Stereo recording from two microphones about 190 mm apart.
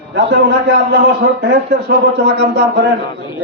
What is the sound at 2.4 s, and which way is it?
Speech, 60° right (ahead or behind).